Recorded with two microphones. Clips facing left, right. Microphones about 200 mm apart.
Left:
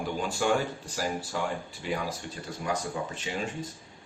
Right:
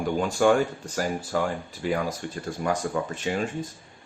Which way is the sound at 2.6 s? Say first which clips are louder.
Right 5 dB; 55° right (ahead or behind).